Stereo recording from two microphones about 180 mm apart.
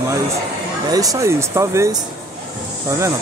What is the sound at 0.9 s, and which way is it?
Speech, 20° right (ahead or behind).